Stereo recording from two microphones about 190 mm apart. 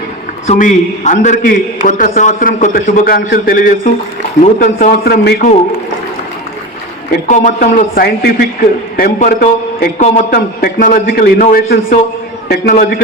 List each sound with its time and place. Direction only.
0.4 s a man's voice: 40° left (ahead or behind)
7.3 s a man's voice: 40° left (ahead or behind)